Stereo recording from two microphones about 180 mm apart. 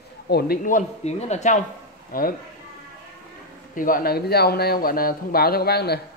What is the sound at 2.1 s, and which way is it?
Speech, 50° left (ahead or behind).